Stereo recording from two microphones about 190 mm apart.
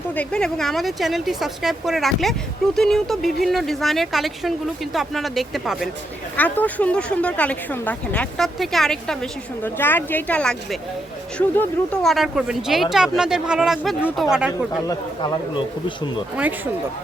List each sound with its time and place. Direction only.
0.1 s speech: 5° left (ahead or behind)
14.8 s speech: 20° left (ahead or behind)